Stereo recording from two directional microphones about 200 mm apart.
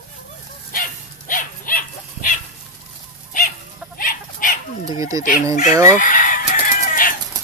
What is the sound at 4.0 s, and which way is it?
Dog, 45° left (ahead or behind).